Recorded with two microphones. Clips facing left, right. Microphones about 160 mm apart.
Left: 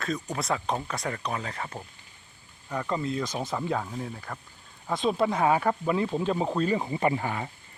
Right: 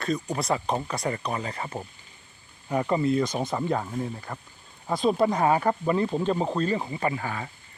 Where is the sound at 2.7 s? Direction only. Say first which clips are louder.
Right 6 dB; 10° right (ahead or behind); by 6.9 s 10° left (ahead or behind).